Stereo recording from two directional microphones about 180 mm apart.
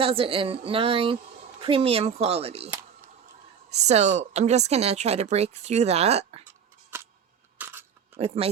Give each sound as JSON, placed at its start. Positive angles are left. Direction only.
{"t": 0.0, "sound": "speech", "side_deg": -30}
{"t": 7.6, "sound": "a sound", "side_deg": -10}
{"t": 8.1, "sound": "speech", "side_deg": -35}